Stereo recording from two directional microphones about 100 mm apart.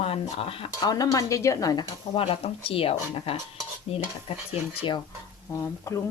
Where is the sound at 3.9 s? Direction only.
90° left.